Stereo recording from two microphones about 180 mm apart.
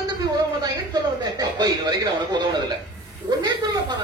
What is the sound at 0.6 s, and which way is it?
A man's voice, 20° right (ahead or behind).